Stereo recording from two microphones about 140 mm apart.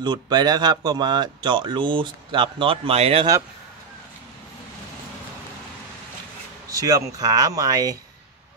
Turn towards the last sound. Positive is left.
turn(degrees=-25)  # may be behind; listen again after turning